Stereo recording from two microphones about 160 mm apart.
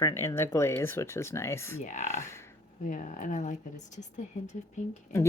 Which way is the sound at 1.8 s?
50° left (ahead or behind).